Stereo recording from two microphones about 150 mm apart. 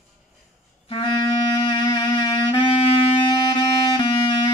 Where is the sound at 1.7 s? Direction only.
30° left (ahead or behind).